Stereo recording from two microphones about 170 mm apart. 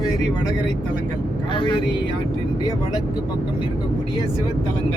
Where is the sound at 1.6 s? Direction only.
30° left (ahead or behind).